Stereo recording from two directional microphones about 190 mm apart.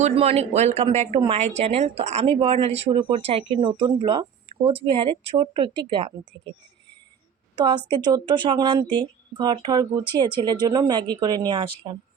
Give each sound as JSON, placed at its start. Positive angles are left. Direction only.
{"t": 0.0, "sound": "speech", "side_deg": -35}
{"t": 7.5, "sound": "speech", "side_deg": -25}